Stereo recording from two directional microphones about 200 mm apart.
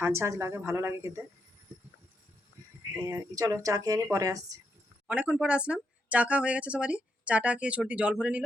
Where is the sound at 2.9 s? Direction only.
15° right (ahead or behind).